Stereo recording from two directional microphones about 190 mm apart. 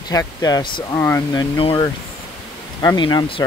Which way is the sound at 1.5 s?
25° left (ahead or behind).